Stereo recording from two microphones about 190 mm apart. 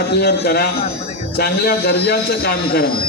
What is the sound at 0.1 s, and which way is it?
Speech, 60° left (ahead or behind).